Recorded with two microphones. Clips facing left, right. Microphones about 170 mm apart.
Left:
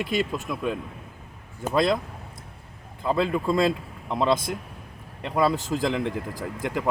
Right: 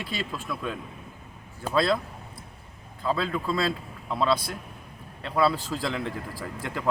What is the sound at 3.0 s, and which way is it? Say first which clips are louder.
Speech: left 4 dB; 20° left (ahead or behind).